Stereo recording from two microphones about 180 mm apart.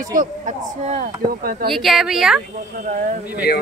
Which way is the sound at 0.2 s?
40° right (ahead or behind).